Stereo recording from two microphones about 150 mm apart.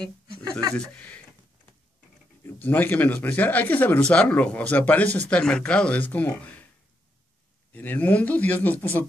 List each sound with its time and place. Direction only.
0.0 s speech: 25° right (ahead or behind)
0.7 s speech: 10° left (ahead or behind)
2.4 s speech: 10° left (ahead or behind)
7.7 s speech: 10° left (ahead or behind)